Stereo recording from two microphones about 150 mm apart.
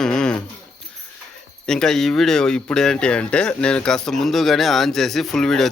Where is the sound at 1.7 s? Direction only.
5° left (ahead or behind).